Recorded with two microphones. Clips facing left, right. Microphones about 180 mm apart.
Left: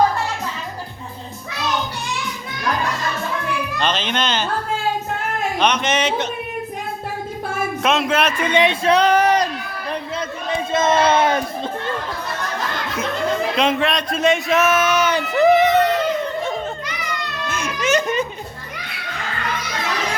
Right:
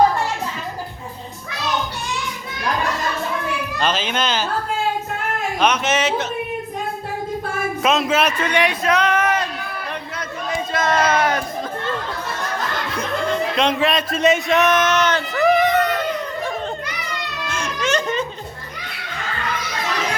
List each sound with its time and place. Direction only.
3.8 s speech: 5° right (ahead or behind)
5.5 s speech: 5° right (ahead or behind)
7.8 s speech: centre (ahead or behind)
8.4 s speech: 20° left (ahead or behind)
10.2 s crowd: 25° left (ahead or behind)
13.6 s speech: centre (ahead or behind)
15.4 s a sound: 25° left (ahead or behind)
17.5 s a sound: 5° left (ahead or behind)